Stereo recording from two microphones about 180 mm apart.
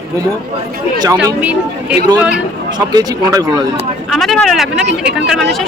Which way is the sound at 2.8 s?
20° right (ahead or behind).